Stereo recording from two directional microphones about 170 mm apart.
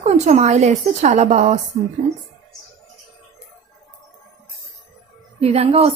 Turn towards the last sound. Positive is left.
turn(degrees=-40)  # may be behind; listen again after turning